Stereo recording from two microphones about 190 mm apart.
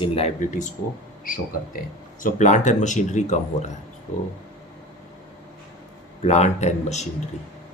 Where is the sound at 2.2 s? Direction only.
40° left (ahead or behind).